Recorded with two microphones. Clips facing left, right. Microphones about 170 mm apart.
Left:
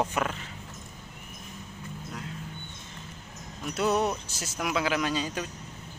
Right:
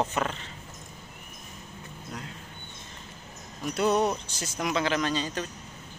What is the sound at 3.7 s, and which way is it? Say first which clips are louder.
Speech: right 2 dB; centre (ahead or behind).